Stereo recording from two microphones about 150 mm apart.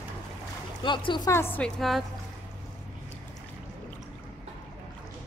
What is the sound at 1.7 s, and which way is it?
Speech, centre (ahead or behind).